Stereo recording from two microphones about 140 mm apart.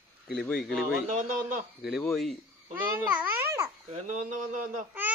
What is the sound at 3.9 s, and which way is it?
Speech, 60° right (ahead or behind).